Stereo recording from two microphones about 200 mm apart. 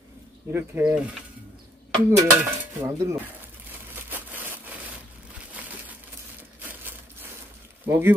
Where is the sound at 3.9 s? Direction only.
10° right (ahead or behind).